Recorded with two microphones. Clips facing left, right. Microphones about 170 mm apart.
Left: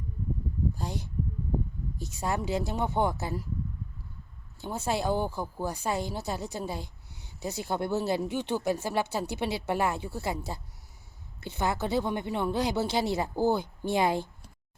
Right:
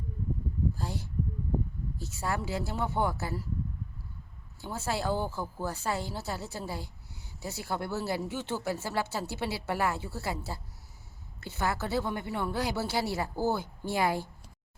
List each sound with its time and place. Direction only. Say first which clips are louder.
0.8 s a woman's voice: left 1 dB; 20° left (ahead or behind)
4.6 s a woman's voice: left 3 dB; 20° left (ahead or behind)